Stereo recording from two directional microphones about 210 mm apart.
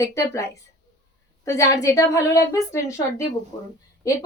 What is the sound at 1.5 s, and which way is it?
Speech, 15° left (ahead or behind).